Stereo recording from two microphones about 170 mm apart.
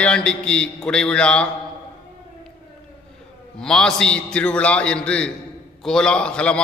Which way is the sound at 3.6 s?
5° left (ahead or behind).